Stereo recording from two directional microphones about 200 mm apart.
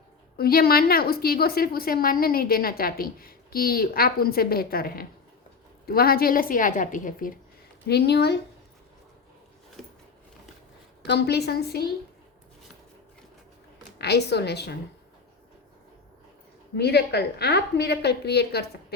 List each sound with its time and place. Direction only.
0.3 s a woman's voice: 50° left (ahead or behind)
7.9 s a woman's voice: 55° left (ahead or behind)
9.8 s a sound: 5° left (ahead or behind)
11.0 s a woman's voice: 55° left (ahead or behind)
14.0 s a woman's voice: 55° left (ahead or behind)
16.7 s a woman's voice: 55° left (ahead or behind)